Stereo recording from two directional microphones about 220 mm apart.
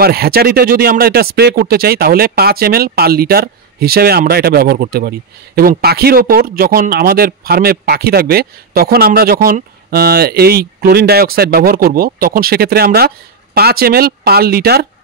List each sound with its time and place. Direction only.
0.0 s speech: 45° right (ahead or behind)